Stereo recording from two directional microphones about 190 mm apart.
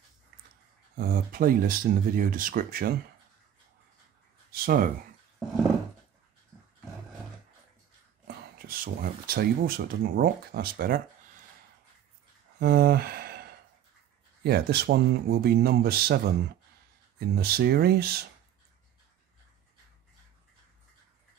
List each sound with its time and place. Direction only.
0.9 s speech: 50° right (ahead or behind)
4.5 s a sound: 50° right (ahead or behind)
8.5 s speech: 50° right (ahead or behind)
12.5 s a sound: 55° right (ahead or behind)
14.4 s speech: 55° right (ahead or behind)
17.4 s speech: 55° right (ahead or behind)